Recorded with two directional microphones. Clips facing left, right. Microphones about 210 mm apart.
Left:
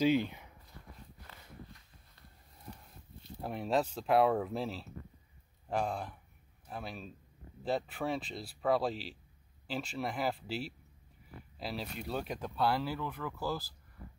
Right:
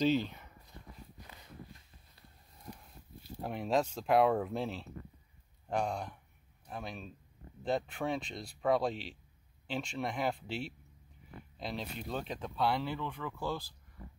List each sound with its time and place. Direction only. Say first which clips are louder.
0.0 s speech: left 1 dB; 15° left (ahead or behind)
3.4 s speech: even; centre (ahead or behind)